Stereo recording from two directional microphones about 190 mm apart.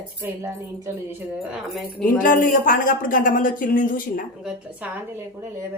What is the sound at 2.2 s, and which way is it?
Speech, 45° left (ahead or behind).